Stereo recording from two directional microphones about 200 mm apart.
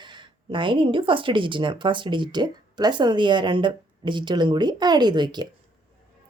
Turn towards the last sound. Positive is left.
turn(degrees=-20)  # may be behind; listen again after turning